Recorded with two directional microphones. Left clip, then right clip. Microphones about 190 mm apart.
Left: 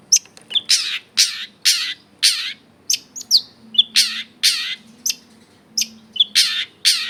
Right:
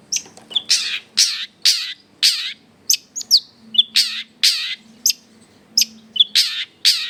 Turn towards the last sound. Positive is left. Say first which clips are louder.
# right 1 dB
turn(degrees=-10)  # may be behind; listen again after turning